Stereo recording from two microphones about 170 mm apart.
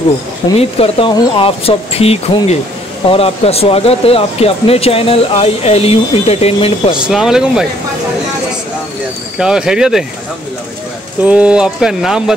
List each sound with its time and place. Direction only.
0.6 s speech: 35° left (ahead or behind)
7.1 s speech: 5° right (ahead or behind)
9.4 s speech: 5° right (ahead or behind)
11.2 s speech: 5° right (ahead or behind)